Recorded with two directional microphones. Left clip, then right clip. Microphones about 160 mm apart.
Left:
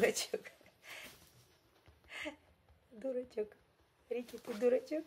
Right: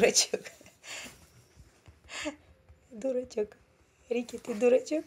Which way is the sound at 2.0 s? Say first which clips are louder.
Right 7 dB; 30° right (ahead or behind).